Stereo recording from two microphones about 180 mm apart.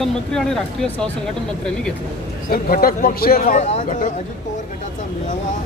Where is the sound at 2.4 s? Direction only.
55° left (ahead or behind).